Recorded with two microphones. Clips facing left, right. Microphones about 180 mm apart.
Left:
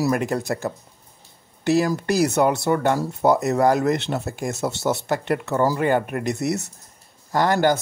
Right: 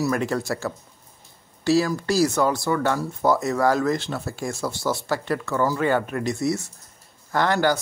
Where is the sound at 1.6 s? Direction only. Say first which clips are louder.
Left 1 dB; 20° left (ahead or behind).